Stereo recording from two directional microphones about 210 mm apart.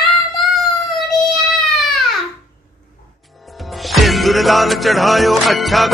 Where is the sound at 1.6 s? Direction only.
Centre (ahead or behind).